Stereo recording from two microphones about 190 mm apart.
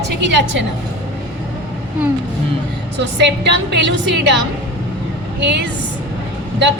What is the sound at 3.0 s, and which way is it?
A woman's voice, 65° right (ahead or behind).